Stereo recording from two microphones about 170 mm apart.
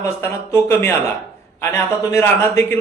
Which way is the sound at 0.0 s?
15° left (ahead or behind).